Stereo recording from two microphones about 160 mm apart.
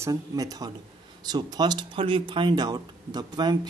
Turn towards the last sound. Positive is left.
turn(degrees=-25)  # may be behind; listen again after turning